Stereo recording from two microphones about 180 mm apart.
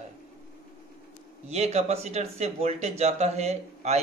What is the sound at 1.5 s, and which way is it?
A man's voice, 35° right (ahead or behind).